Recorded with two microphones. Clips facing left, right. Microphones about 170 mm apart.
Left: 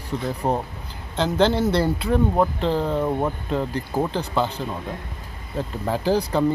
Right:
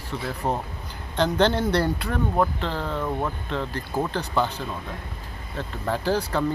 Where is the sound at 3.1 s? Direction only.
20° left (ahead or behind).